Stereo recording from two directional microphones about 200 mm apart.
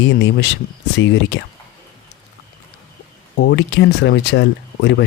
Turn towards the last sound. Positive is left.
turn(degrees=60)  # may be behind; listen again after turning